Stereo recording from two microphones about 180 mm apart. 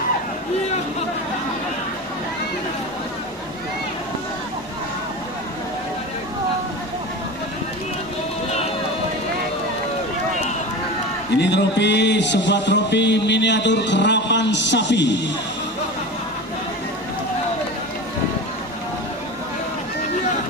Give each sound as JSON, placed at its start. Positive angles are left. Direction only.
{"t": 11.3, "sound": "speech", "side_deg": 75}